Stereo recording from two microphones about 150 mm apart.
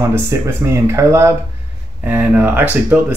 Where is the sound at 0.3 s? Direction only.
20° right (ahead or behind).